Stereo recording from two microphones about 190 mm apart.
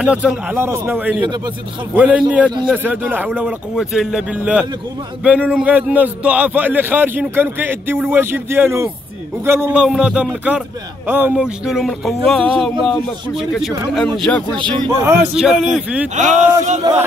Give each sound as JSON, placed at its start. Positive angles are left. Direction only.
{"t": 0.0, "sound": "a man's voice", "side_deg": -5}
{"t": 14.6, "sound": "speech", "side_deg": -25}
{"t": 15.0, "sound": "speech", "side_deg": -5}
{"t": 16.2, "sound": "speech", "side_deg": -40}